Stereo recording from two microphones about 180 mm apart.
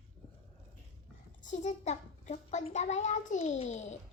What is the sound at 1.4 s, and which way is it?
A child's voice, 40° left (ahead or behind).